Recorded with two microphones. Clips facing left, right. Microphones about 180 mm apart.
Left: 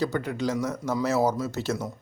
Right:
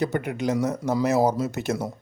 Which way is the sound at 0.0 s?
20° right (ahead or behind).